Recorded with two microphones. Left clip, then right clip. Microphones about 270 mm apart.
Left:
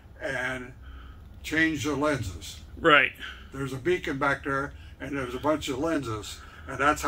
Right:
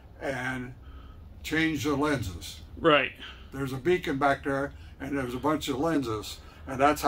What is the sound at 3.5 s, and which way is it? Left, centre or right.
A man's voice, right.